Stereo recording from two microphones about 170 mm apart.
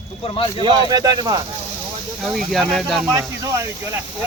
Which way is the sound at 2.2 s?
Centre (ahead or behind).